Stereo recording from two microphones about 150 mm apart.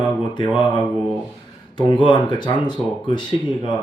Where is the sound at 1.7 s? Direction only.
35° left (ahead or behind).